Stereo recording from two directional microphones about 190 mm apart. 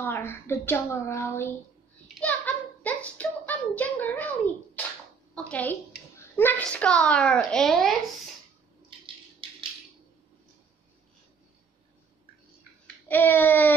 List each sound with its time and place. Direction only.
0.0 s a woman's voice: 10° left (ahead or behind)
2.1 s a sound: 10° left (ahead or behind)
5.5 s a child's voice: 10° left (ahead or behind)
9.0 s rattle: 25° right (ahead or behind)
12.8 s child singing: 10° left (ahead or behind)